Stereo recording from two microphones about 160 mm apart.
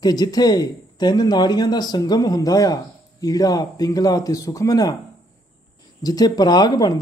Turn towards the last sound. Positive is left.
turn(degrees=25)  # may be behind; listen again after turning